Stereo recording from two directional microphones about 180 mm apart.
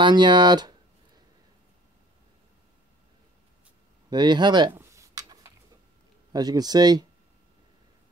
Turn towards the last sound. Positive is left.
turn(degrees=-20)  # may be behind; listen again after turning